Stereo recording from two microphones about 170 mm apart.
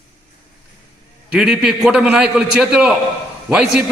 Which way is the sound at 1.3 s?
5° right (ahead or behind).